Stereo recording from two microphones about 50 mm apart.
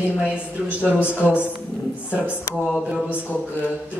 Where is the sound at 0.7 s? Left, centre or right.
Right.